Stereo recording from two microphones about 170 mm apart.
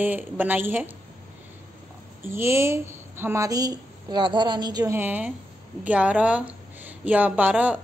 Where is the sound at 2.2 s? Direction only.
15° right (ahead or behind).